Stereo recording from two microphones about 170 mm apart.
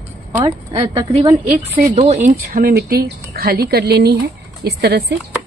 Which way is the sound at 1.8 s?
45° right (ahead or behind).